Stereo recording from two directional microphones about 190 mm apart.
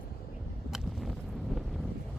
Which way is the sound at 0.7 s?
Centre (ahead or behind).